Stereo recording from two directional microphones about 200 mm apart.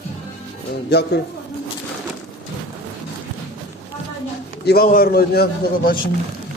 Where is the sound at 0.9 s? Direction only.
55° left (ahead or behind).